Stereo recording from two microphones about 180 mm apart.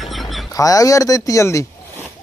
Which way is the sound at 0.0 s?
Centre (ahead or behind).